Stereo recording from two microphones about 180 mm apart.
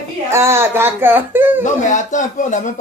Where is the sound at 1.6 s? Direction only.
45° left (ahead or behind).